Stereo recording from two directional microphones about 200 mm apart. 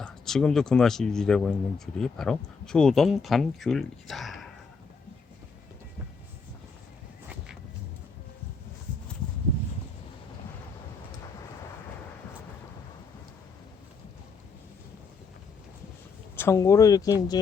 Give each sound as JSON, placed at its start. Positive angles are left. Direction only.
{"t": 0.0, "sound": "speech", "side_deg": 5}
{"t": 16.3, "sound": "speech", "side_deg": 15}